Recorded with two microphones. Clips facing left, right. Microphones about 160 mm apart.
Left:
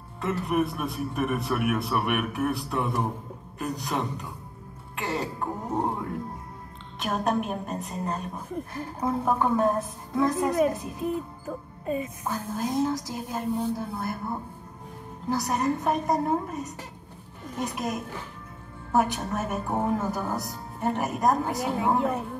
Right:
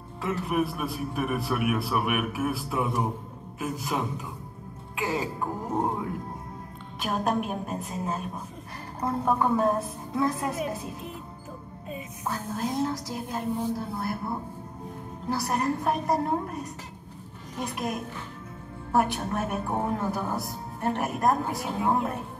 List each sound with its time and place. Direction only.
0.2 s a woman's voice: centre (ahead or behind)
11.4 s speech: 50° left (ahead or behind)
12.3 s a woman's voice: centre (ahead or behind)